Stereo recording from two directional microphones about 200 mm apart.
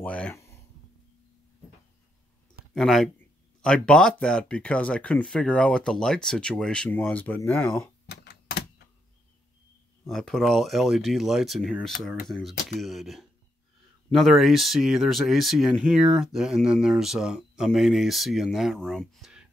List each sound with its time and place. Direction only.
0.0 s speech: 5° left (ahead or behind)
2.7 s speech: centre (ahead or behind)
8.1 s typewriter: 55° left (ahead or behind)
10.0 s speech: centre (ahead or behind)